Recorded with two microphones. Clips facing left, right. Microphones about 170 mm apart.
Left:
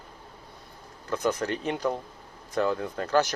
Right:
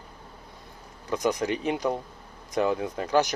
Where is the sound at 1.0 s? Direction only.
15° right (ahead or behind).